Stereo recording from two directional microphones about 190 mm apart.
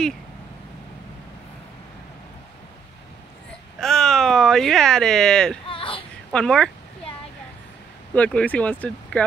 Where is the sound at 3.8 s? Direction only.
Centre (ahead or behind).